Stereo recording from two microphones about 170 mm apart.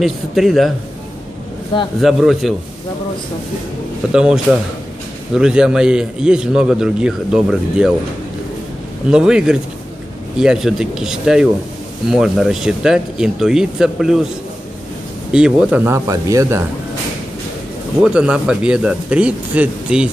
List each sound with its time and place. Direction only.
0.0 s a man's voice: centre (ahead or behind)
2.0 s a man's voice: centre (ahead or behind)
4.1 s a man's voice: 5° right (ahead or behind)
9.1 s a man's voice: 5° right (ahead or behind)
15.3 s speech: 5° right (ahead or behind)
18.0 s a man's voice: 5° right (ahead or behind)